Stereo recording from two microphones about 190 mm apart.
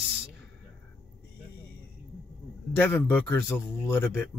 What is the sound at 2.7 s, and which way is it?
A man's voice, 10° left (ahead or behind).